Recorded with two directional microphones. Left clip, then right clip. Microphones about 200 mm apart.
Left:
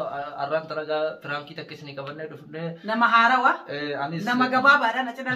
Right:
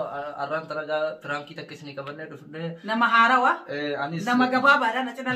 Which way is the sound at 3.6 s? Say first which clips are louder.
Even; 10° left (ahead or behind).